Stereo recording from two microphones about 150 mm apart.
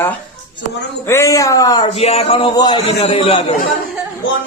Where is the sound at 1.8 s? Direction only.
45° left (ahead or behind).